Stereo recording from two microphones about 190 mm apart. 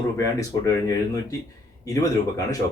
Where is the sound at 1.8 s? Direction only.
20° left (ahead or behind).